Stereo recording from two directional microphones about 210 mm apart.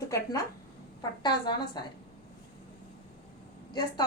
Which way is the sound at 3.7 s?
20° left (ahead or behind).